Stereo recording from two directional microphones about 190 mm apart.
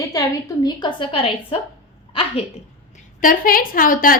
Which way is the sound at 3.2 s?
45° left (ahead or behind).